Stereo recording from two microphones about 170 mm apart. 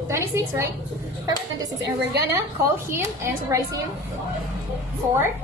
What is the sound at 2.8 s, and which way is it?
Child singing, 15° right (ahead or behind).